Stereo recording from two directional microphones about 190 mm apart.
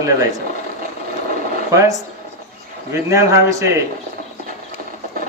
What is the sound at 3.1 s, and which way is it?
Speech, 15° right (ahead or behind).